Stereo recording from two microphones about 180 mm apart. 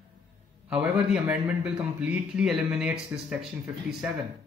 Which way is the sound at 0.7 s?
5° right (ahead or behind).